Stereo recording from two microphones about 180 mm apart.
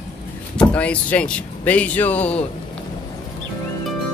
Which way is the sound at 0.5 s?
5° left (ahead or behind).